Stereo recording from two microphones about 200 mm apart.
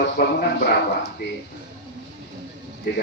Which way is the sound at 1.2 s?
55° left (ahead or behind).